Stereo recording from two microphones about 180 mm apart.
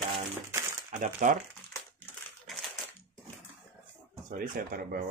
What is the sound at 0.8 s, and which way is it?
Speech, 40° right (ahead or behind).